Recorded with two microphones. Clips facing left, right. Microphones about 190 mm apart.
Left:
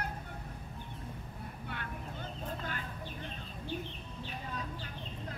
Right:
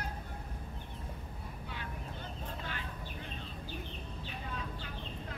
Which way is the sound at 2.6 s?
45° left (ahead or behind).